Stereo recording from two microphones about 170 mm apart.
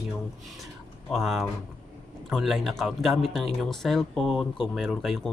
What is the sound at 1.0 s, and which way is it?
Speech, centre (ahead or behind).